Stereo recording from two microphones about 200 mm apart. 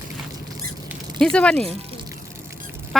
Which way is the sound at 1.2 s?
5° left (ahead or behind).